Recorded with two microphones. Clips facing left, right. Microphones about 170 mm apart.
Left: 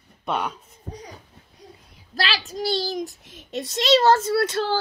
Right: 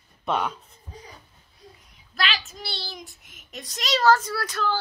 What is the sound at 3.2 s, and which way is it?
A child's voice, 30° left (ahead or behind).